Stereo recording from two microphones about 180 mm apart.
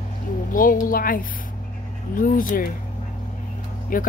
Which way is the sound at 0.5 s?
50° left (ahead or behind).